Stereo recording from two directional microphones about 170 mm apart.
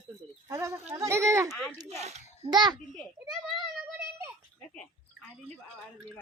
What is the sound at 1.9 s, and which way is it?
Speech, 40° right (ahead or behind).